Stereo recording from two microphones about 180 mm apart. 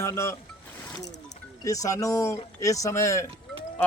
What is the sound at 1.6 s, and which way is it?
Speech, 20° left (ahead or behind).